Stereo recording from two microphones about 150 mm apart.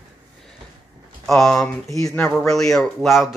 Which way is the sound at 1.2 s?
Centre (ahead or behind).